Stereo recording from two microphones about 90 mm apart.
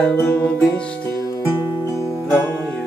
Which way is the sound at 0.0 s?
15° left (ahead or behind).